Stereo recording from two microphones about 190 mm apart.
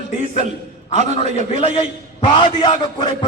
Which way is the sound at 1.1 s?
30° left (ahead or behind).